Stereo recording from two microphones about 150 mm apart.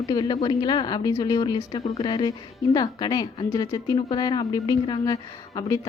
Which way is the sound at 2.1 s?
30° left (ahead or behind).